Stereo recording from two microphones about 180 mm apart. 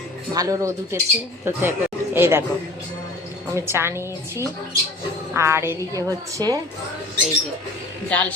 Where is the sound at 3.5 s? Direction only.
15° right (ahead or behind).